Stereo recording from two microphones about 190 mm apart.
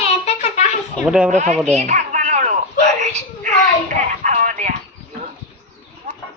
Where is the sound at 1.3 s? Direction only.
35° right (ahead or behind).